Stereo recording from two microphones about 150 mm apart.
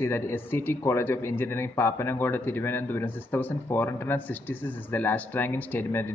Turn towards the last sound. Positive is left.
turn(degrees=15)  # may be behind; listen again after turning